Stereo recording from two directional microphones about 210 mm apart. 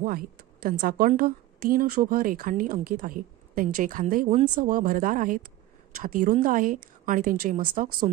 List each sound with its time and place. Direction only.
0.0 s speech: 45° right (ahead or behind)